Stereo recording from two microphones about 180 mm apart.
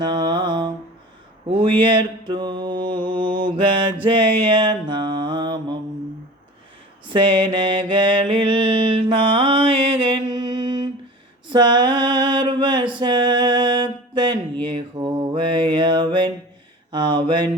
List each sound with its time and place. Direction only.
0.0 s mantra: 25° right (ahead or behind)
7.1 s mantra: 25° right (ahead or behind)
11.4 s a sound: 25° right (ahead or behind)
16.9 s mantra: 25° right (ahead or behind)